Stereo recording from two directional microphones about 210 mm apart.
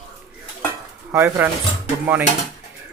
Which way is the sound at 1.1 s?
10° right (ahead or behind).